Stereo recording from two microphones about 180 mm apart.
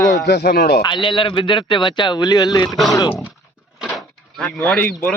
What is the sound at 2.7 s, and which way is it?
Speech, centre (ahead or behind).